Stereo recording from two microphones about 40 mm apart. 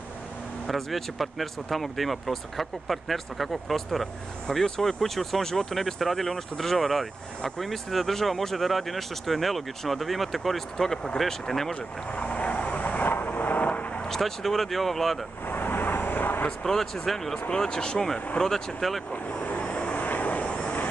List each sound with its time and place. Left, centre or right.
0.7 s speech: centre
4.5 s speech: centre
11.7 s vehicle: left
14.0 s speech: centre
15.4 s vehicle: left
15.8 s vehicle: left
16.4 s speech: centre
17.5 s speech: centre
19.4 s vehicle: left
20.0 s vehicle: left